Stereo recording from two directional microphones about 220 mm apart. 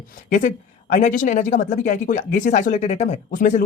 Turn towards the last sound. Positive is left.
turn(degrees=35)  # may be behind; listen again after turning